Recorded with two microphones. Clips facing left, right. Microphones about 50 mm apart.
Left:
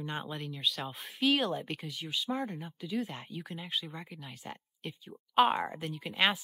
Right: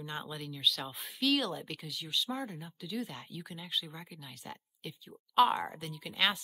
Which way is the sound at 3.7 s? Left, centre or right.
Centre.